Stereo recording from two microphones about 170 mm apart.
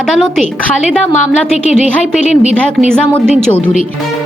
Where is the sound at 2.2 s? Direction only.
45° left (ahead or behind).